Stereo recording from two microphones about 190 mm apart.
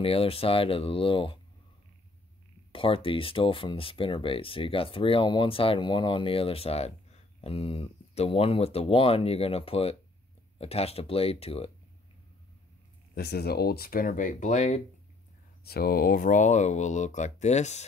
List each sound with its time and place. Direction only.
0.0 s speech: 30° left (ahead or behind)
2.7 s speech: 30° left (ahead or behind)
13.1 s speech: 55° left (ahead or behind); by 14.8 s 40° left (ahead or behind)
15.6 s speech: 55° left (ahead or behind); by 17.8 s 35° left (ahead or behind)